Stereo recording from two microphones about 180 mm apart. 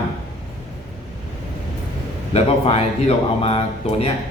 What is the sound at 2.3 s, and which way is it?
Speech, 35° left (ahead or behind).